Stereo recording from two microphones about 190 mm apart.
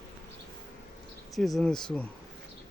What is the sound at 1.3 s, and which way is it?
Speech, centre (ahead or behind).